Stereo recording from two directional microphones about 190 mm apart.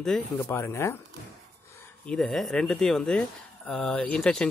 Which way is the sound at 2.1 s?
Centre (ahead or behind).